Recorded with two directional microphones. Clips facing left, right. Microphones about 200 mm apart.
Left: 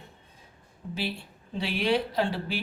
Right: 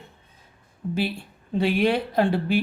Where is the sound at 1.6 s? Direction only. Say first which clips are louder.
Right 5 dB; 50° right (ahead or behind).